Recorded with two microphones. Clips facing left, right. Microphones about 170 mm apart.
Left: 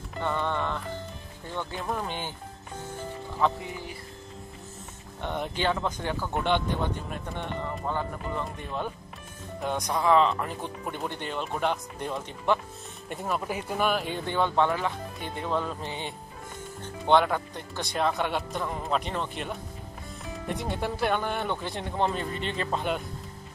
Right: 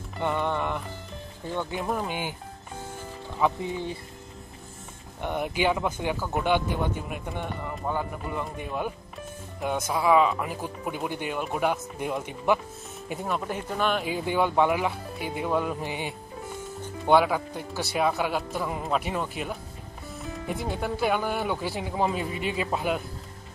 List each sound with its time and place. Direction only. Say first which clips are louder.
0.2 s speech: right 2 dB; 15° right (ahead or behind)
3.6 s speech: right 6 dB; 25° right (ahead or behind)
5.2 s speech: right 3 dB; 10° right (ahead or behind)
13.1 s speech: right 1 dB; centre (ahead or behind)
14.0 s speech: right 2 dB; 5° right (ahead or behind)